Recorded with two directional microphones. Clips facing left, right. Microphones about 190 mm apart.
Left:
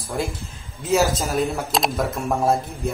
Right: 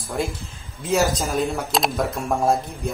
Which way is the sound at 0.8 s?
Centre (ahead or behind).